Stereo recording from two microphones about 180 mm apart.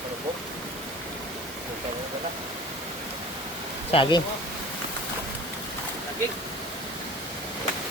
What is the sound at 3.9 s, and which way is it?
Speech, 30° left (ahead or behind).